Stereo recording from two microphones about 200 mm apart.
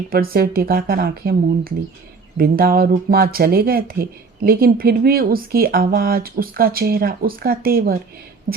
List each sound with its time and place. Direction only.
0.1 s speech: 50° right (ahead or behind)